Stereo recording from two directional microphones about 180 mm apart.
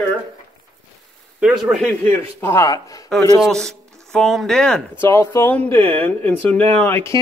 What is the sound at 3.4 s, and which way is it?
A man's voice, centre (ahead or behind).